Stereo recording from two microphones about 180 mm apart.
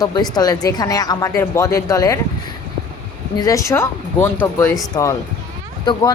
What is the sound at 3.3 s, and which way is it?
Speech, 20° left (ahead or behind).